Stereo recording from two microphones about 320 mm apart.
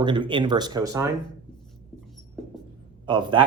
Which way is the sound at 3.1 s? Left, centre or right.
Centre.